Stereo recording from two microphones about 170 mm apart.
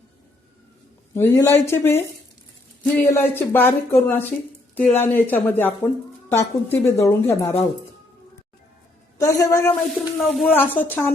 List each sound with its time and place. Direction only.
1.1 s speech: 15° left (ahead or behind)
3.1 s speech: 15° left (ahead or behind)
9.1 s a woman's voice: 20° left (ahead or behind)
9.9 s speech: centre (ahead or behind)